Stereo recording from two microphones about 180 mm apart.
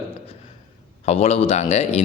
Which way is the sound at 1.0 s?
35° left (ahead or behind).